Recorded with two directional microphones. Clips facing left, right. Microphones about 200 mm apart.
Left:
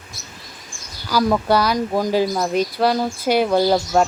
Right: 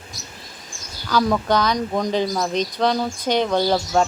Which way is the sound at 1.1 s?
5° left (ahead or behind).